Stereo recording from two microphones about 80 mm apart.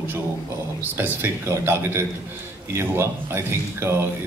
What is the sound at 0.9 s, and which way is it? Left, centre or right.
A man's voice, right.